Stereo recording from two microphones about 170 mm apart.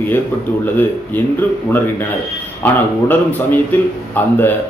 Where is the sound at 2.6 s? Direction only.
10° left (ahead or behind).